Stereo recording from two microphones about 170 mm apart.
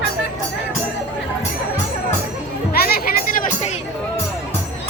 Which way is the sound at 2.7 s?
65° left (ahead or behind).